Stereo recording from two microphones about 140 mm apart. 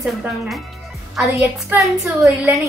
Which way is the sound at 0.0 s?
Centre (ahead or behind).